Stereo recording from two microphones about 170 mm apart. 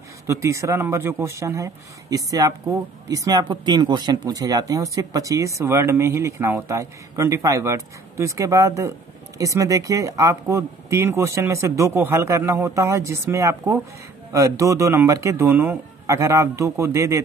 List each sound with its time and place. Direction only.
0.3 s speech: 15° right (ahead or behind)